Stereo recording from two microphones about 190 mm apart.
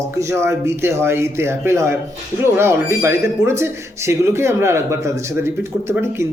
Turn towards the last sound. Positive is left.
turn(degrees=-15)  # may be behind; listen again after turning